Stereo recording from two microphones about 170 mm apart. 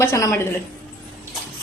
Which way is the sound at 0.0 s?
15° left (ahead or behind).